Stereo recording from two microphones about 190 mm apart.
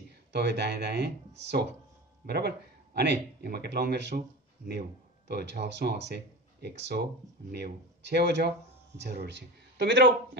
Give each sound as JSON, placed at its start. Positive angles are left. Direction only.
{"t": 0.3, "sound": "speech", "side_deg": -60}
{"t": 5.3, "sound": "speech", "side_deg": -60}